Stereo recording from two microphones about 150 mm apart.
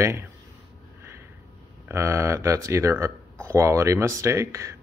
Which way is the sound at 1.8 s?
20° right (ahead or behind).